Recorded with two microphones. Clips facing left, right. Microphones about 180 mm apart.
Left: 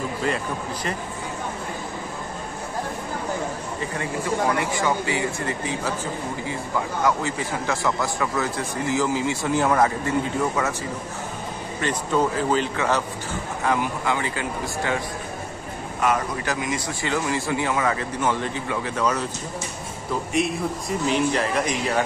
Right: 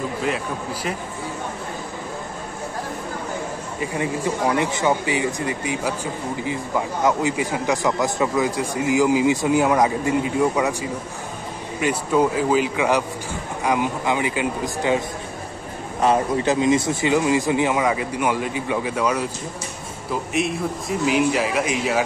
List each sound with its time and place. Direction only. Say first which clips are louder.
3.8 s a man's voice: right 5 dB; 15° right (ahead or behind)
20.3 s a man's voice: even; centre (ahead or behind)